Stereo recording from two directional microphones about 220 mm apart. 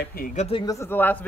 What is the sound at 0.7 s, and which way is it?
Speech, 10° left (ahead or behind).